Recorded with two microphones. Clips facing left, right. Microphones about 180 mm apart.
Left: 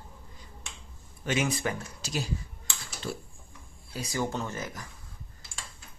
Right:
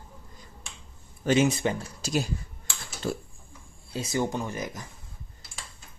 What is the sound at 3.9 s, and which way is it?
Speech, 25° right (ahead or behind).